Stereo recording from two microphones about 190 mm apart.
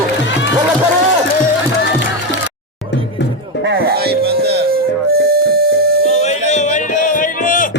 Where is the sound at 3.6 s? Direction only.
60° right (ahead or behind).